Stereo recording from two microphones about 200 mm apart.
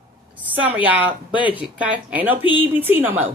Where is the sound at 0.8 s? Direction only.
10° right (ahead or behind).